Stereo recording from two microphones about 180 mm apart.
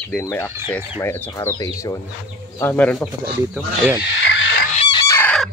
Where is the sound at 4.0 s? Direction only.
80° left.